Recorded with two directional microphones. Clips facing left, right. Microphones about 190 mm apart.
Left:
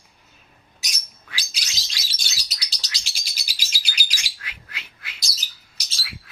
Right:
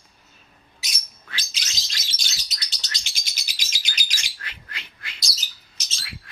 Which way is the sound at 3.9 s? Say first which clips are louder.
Even; 10° left (ahead or behind).